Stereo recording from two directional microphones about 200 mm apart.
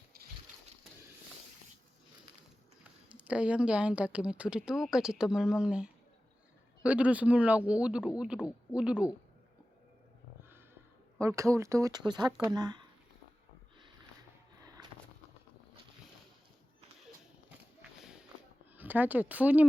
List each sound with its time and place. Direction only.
3.2 s speech: 5° right (ahead or behind)
11.2 s speech: 15° right (ahead or behind)
14.6 s a sound: 20° right (ahead or behind)
18.0 s walk: 5° right (ahead or behind)
18.8 s speech: 10° right (ahead or behind)